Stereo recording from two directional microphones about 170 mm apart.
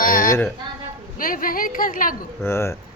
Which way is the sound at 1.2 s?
55° left (ahead or behind).